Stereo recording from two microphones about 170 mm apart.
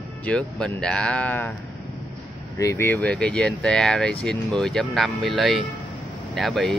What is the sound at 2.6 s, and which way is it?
Speech, 15° left (ahead or behind).